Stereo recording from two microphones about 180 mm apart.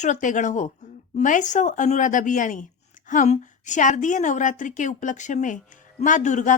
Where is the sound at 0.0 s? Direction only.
45° left (ahead or behind).